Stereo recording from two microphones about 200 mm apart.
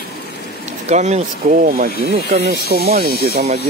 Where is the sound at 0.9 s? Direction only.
35° right (ahead or behind); by 2.8 s 55° right (ahead or behind).